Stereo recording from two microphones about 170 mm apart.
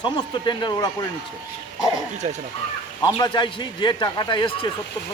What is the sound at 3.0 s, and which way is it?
Speech, 25° left (ahead or behind).